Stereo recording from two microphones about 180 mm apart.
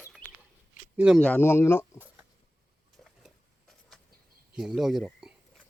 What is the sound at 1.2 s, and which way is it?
Speech, 10° left (ahead or behind).